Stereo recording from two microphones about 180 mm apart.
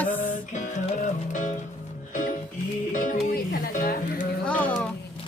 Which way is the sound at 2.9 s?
45° left (ahead or behind).